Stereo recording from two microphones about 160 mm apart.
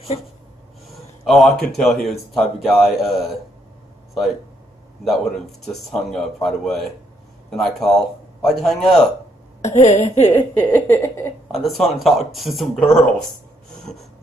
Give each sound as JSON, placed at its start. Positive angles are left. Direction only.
{"t": 1.2, "sound": "speech", "side_deg": 0}
{"t": 5.0, "sound": "speech", "side_deg": 0}
{"t": 9.8, "sound": "speech", "side_deg": 40}
{"t": 10.2, "sound": "speech", "side_deg": 10}
{"t": 11.5, "sound": "speech", "side_deg": 0}